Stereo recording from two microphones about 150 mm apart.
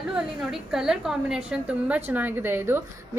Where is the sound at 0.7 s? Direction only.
5° right (ahead or behind).